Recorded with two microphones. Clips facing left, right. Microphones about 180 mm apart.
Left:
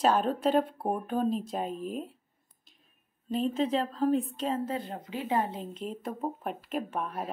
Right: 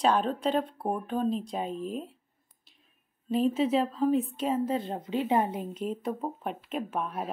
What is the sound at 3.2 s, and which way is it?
Speech, 5° right (ahead or behind).